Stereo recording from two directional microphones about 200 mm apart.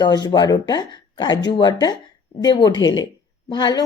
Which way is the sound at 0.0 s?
20° left (ahead or behind).